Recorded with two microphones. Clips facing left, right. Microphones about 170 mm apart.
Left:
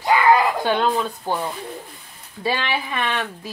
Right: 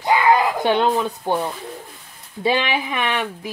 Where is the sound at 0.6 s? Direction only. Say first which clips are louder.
Right 2 dB; 20° right (ahead or behind).